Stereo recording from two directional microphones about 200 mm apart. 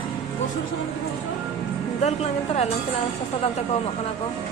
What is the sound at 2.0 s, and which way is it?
Speech, 35° left (ahead or behind).